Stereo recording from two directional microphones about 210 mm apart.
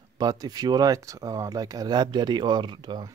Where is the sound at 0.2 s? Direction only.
20° right (ahead or behind).